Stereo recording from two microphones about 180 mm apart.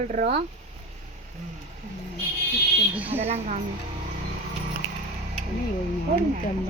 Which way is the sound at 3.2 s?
40° right (ahead or behind).